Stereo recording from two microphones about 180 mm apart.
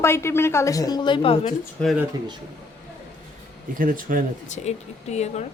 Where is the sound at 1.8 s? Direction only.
5° left (ahead or behind).